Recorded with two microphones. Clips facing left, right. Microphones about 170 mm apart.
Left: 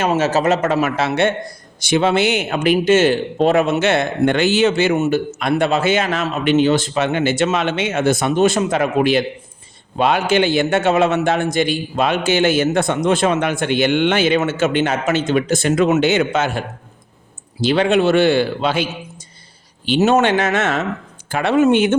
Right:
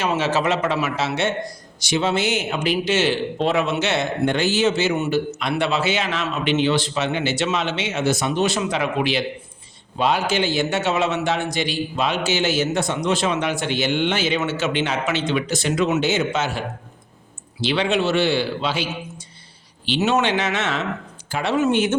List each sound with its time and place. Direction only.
0.0 s speech: 45° left (ahead or behind)
10.0 s speech: 60° left (ahead or behind)